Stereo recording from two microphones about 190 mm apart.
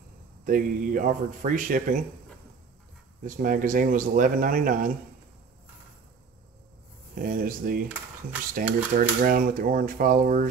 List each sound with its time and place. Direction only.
0.5 s speech: 45° right (ahead or behind)
3.3 s speech: 45° right (ahead or behind)
7.2 s speech: 45° right (ahead or behind)